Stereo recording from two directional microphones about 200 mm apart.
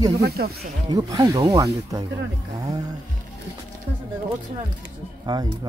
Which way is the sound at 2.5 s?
20° right (ahead or behind).